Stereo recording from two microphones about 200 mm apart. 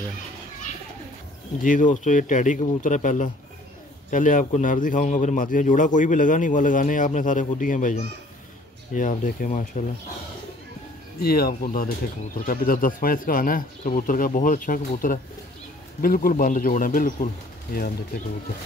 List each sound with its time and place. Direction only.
1.6 s a man's voice: 40° left (ahead or behind)
11.1 s a man's voice: 50° left (ahead or behind)